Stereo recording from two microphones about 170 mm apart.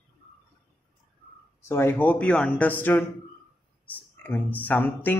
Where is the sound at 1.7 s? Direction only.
15° left (ahead or behind).